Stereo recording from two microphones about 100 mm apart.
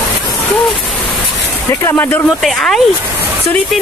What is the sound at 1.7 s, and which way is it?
Speech, 25° left (ahead or behind).